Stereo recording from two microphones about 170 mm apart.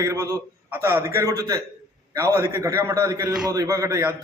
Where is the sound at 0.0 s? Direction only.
20° right (ahead or behind).